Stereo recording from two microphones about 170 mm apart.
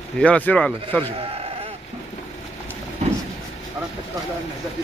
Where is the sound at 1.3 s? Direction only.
35° right (ahead or behind).